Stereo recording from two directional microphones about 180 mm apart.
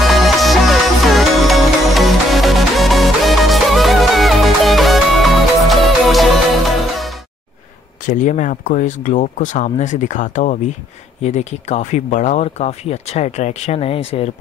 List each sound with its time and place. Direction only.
0.0 s music: centre (ahead or behind)
8.0 s speech: 45° left (ahead or behind)